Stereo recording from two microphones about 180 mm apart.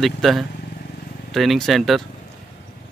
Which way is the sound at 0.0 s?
Centre (ahead or behind).